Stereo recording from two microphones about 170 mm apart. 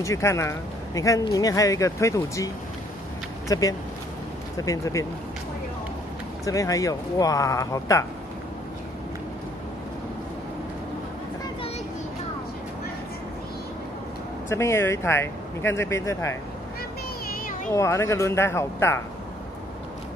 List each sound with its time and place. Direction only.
0.0 s speech: 15° left (ahead or behind)
6.4 s speech: 20° left (ahead or behind)
14.5 s speech: 15° left (ahead or behind)
17.7 s speech: 15° left (ahead or behind)